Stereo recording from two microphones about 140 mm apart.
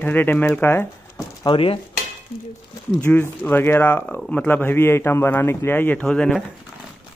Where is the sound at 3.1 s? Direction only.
15° left (ahead or behind).